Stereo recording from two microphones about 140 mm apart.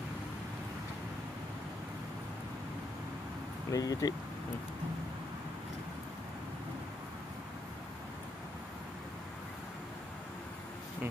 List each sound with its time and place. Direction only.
3.7 s speech: 25° left (ahead or behind)